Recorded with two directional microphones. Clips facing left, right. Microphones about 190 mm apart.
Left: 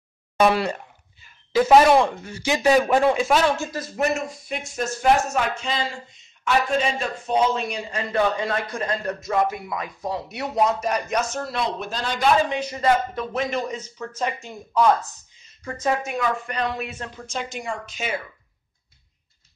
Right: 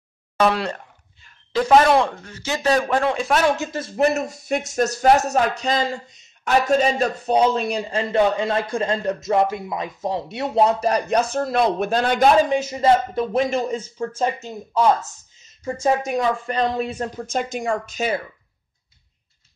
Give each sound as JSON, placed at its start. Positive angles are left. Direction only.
{"t": 0.4, "sound": "speech", "side_deg": 10}
{"t": 3.4, "sound": "speech", "side_deg": -20}
{"t": 11.5, "sound": "speech", "side_deg": -55}
{"t": 12.4, "sound": "speech", "side_deg": -45}
{"t": 12.6, "sound": "a woman's voice", "side_deg": -25}
{"t": 17.3, "sound": "speech", "side_deg": -45}